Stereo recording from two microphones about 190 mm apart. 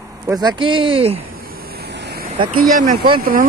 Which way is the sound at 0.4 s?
25° right (ahead or behind).